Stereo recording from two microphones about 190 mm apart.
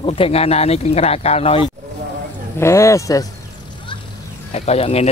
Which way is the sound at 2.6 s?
15° left (ahead or behind).